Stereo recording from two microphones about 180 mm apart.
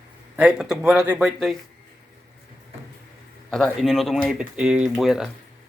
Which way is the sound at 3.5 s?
Centre (ahead or behind).